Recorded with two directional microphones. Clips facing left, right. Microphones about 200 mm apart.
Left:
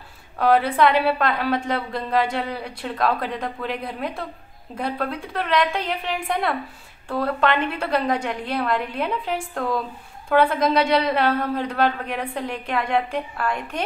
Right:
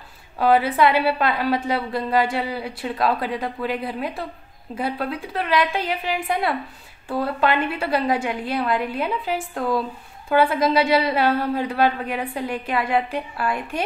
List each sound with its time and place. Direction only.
0.4 s a woman's voice: 5° right (ahead or behind)